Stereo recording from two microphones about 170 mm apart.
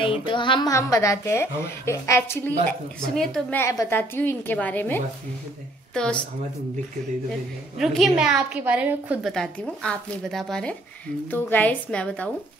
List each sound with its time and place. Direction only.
0.0 s a woman's voice: 30° left (ahead or behind); by 2.5 s 15° left (ahead or behind)
3.2 s speech: 5° left (ahead or behind)
3.5 s a woman's voice: 15° left (ahead or behind)
7.2 s a woman's voice: centre (ahead or behind)
9.3 s a woman's voice: 5° left (ahead or behind)